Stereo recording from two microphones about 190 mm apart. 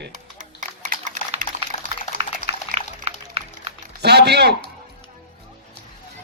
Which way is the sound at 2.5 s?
30° right (ahead or behind).